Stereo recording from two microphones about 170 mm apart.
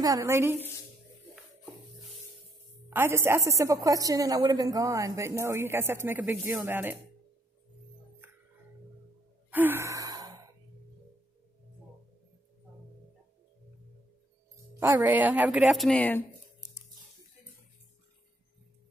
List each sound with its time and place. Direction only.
0.0 s a woman's voice: 20° right (ahead or behind)
2.9 s a woman's voice: 15° right (ahead or behind)
9.5 s sigh: 10° right (ahead or behind)
14.8 s a woman's voice: 10° right (ahead or behind); by 16.3 s 10° left (ahead or behind)